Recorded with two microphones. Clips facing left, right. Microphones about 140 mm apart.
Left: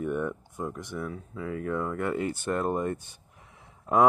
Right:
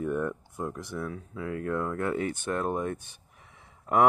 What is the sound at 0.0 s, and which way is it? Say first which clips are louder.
Speech: even; centre (ahead or behind).